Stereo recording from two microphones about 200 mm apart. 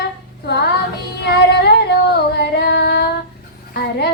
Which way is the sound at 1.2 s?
55° left (ahead or behind).